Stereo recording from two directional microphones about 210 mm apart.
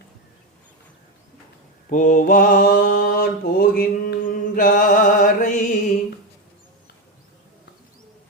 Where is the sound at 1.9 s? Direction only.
40° left (ahead or behind).